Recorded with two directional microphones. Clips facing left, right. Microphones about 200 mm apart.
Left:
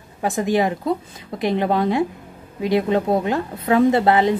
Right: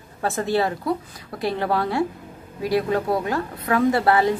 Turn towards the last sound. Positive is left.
turn(degrees=20)  # may be behind; listen again after turning